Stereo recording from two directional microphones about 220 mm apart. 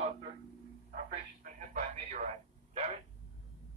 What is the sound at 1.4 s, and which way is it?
Radio, 35° right (ahead or behind).